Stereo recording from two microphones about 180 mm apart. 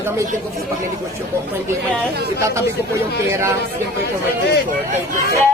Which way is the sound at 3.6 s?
65° left (ahead or behind).